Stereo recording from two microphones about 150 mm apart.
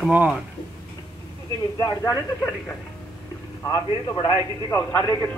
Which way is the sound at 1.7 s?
25° left (ahead or behind).